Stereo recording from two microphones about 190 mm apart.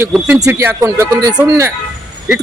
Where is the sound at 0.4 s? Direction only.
15° right (ahead or behind).